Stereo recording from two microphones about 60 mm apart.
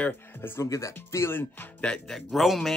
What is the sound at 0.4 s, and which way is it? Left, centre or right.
Speech, left.